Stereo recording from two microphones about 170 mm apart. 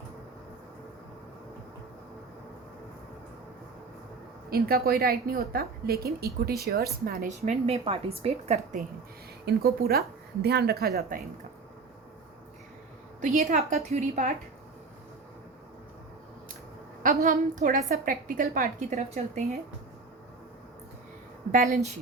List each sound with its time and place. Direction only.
4.4 s a woman's voice: 60° right (ahead or behind); by 8.8 s 40° right (ahead or behind)
9.6 s a woman's voice: 65° right (ahead or behind)
13.2 s a woman's voice: 45° right (ahead or behind)
17.0 s a woman's voice: 60° right (ahead or behind)
18.9 s a woman's voice: 40° right (ahead or behind)